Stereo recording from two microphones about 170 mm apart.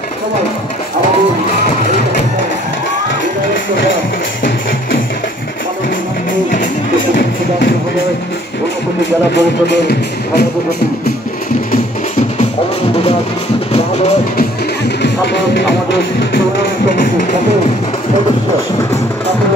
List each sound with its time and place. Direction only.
9.3 s music: 80° left
15.0 s music: 90° left